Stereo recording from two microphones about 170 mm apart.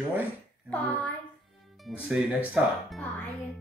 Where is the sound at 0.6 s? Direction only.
10° left (ahead or behind).